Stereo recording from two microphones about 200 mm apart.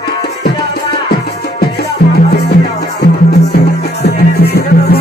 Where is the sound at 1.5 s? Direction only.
55° left (ahead or behind).